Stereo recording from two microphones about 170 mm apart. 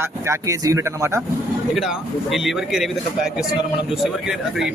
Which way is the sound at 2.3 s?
Centre (ahead or behind).